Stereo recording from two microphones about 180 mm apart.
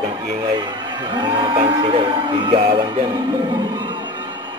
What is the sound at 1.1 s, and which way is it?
Speech, 30° right (ahead or behind).